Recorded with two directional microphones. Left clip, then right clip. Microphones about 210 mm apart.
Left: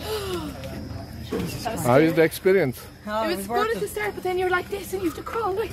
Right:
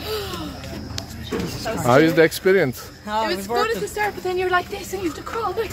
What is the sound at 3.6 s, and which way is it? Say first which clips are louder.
Speech: right 3 dB; 5° left (ahead or behind).